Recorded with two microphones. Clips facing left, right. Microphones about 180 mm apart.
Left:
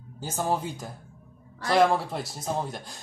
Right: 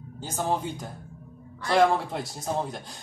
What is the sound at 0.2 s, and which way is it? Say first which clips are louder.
Speech: even; 5° left (ahead or behind).